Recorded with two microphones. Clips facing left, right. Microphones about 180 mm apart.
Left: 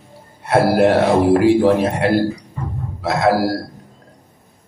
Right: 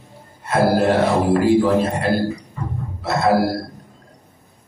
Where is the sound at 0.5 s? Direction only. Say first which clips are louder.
Left 3 dB; 70° left (ahead or behind).